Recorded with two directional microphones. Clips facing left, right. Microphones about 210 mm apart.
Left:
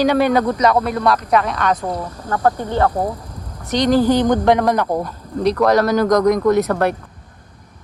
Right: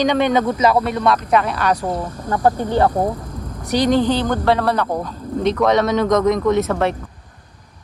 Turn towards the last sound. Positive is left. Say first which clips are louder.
# left 2 dB
turn(degrees=0)  # may be behind; listen again after turning